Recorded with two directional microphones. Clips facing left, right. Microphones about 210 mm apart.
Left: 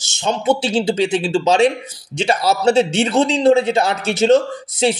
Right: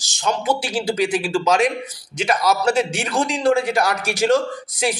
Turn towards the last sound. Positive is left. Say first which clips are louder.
# left 5 dB
turn(degrees=25)  # may be behind; listen again after turning